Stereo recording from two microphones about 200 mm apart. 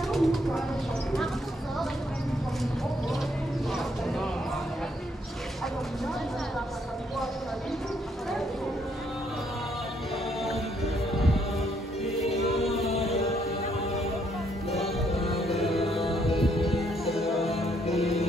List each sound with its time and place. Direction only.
0.1 s a sound: centre (ahead or behind)
12.8 s music: 30° left (ahead or behind)
15.1 s music: 30° left (ahead or behind)
15.4 s music: centre (ahead or behind)
17.5 s music: 30° left (ahead or behind)